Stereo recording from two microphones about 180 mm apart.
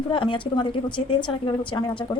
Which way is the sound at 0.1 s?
25° left (ahead or behind).